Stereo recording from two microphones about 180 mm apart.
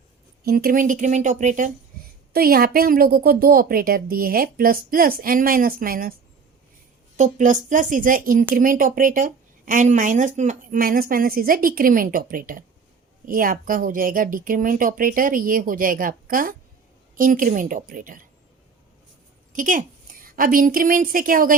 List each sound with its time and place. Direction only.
0.4 s speech: 55° right (ahead or behind)
2.3 s speech: 55° right (ahead or behind)
7.2 s speech: 45° right (ahead or behind)
19.5 s a woman's voice: 50° right (ahead or behind)